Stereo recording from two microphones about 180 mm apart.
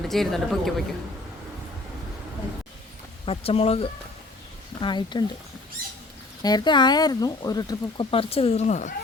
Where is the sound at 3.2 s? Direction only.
30° left (ahead or behind).